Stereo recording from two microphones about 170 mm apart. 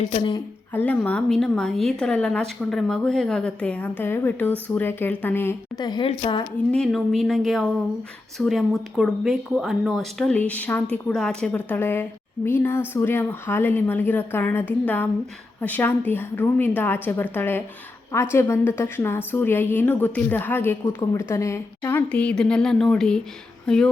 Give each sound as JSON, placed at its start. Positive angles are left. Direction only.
{"t": 0.0, "sound": "a woman's voice", "side_deg": 40}
{"t": 0.7, "sound": "a woman's voice", "side_deg": 10}
{"t": 6.7, "sound": "a woman's voice", "side_deg": 0}